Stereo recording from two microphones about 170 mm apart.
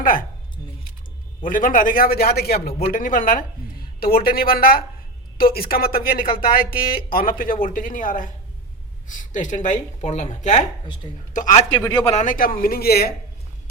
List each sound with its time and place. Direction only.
0.0 s speech: 55° left (ahead or behind)
1.4 s a man's voice: 55° left (ahead or behind)
2.6 s speech: 35° left (ahead or behind)
2.9 s a man's voice: 50° left (ahead or behind)
11.0 s speech: 25° left (ahead or behind)
11.3 s speech: 50° left (ahead or behind)
11.9 s speech: 35° left (ahead or behind)
12.2 s a man's voice: 50° left (ahead or behind)